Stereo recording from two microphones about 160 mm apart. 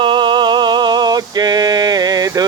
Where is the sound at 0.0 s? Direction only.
30° right (ahead or behind).